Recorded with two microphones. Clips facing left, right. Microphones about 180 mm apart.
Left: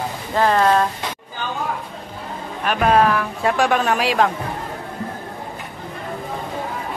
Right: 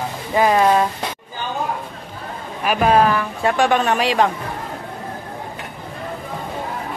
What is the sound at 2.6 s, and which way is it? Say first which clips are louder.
Speech: right 1 dB; 5° right (ahead or behind).